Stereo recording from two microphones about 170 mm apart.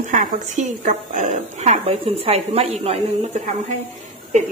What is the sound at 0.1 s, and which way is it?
A woman's voice, 45° right (ahead or behind).